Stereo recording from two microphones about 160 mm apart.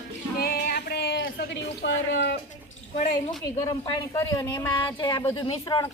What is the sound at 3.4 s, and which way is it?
Speech, 20° left (ahead or behind).